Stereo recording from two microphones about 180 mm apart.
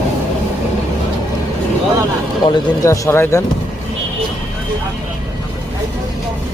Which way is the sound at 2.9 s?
15° left (ahead or behind).